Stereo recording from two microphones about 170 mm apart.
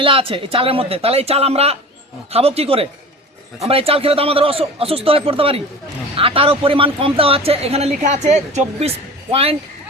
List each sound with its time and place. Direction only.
0.0 s a man's voice: 30° right (ahead or behind)